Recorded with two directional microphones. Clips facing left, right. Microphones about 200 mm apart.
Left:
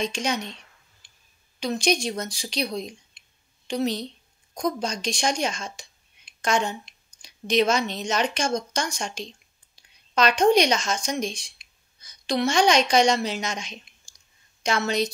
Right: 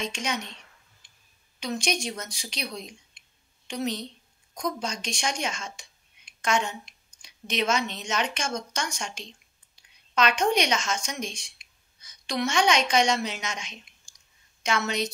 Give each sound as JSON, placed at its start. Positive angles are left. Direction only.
{"t": 0.0, "sound": "a woman's voice", "side_deg": 35}
{"t": 1.0, "sound": "a sound", "side_deg": 30}
{"t": 1.6, "sound": "a woman's voice", "side_deg": 35}